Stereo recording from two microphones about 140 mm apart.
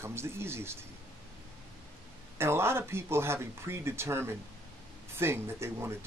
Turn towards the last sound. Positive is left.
turn(degrees=-20)  # may be behind; listen again after turning